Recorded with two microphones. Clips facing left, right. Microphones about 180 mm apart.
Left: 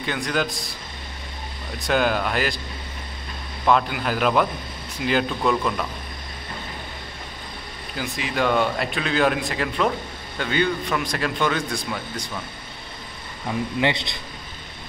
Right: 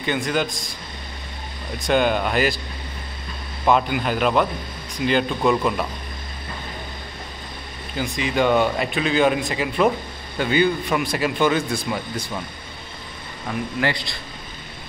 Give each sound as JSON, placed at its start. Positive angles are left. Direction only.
{"t": 0.0, "sound": "a man's voice", "side_deg": 0}
{"t": 1.8, "sound": "a man's voice", "side_deg": 0}
{"t": 3.6, "sound": "a man's voice", "side_deg": -5}
{"t": 5.4, "sound": "a man's voice", "side_deg": -10}
{"t": 8.0, "sound": "a man's voice", "side_deg": 0}
{"t": 13.7, "sound": "a man's voice", "side_deg": 20}